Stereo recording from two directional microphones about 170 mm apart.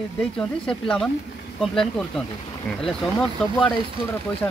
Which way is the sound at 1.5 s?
5° left (ahead or behind).